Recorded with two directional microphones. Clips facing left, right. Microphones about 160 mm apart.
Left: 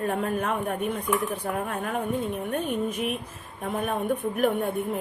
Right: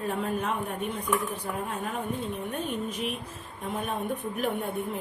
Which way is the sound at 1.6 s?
55° left (ahead or behind).